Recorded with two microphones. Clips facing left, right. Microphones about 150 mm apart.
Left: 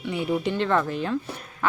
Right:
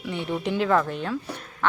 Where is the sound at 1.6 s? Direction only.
5° left (ahead or behind).